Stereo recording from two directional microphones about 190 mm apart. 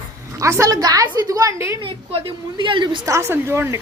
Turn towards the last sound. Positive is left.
turn(degrees=-15)  # may be behind; listen again after turning